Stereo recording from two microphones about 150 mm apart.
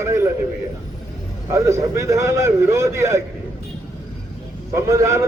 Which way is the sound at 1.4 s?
20° right (ahead or behind).